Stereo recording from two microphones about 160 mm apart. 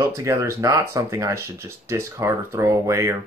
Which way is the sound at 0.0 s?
15° right (ahead or behind).